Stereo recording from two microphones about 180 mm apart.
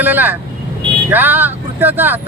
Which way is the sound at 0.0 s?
10° right (ahead or behind).